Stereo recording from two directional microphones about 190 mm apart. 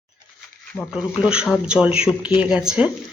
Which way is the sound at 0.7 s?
Centre (ahead or behind).